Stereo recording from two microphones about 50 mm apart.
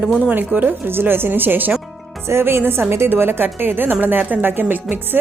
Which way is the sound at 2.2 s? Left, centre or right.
Right.